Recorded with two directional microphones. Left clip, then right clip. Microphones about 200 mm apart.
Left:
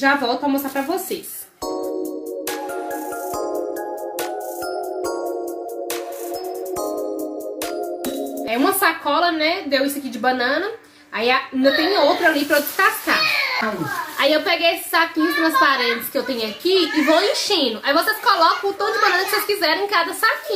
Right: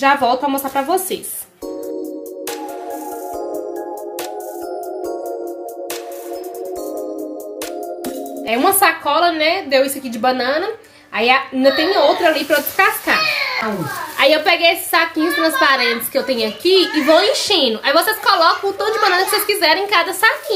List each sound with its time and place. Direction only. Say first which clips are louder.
0.0 s a woman's voice: right 4 dB; 35° right (ahead or behind)
8.5 s a woman's voice: right 5 dB; 35° right (ahead or behind)
14.1 s a woman's voice: right 5 dB; 35° right (ahead or behind)